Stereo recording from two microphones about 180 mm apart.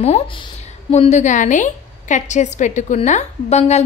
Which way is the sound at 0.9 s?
40° left (ahead or behind).